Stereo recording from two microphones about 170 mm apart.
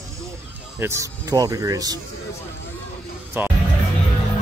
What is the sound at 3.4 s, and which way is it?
Speech, 10° right (ahead or behind).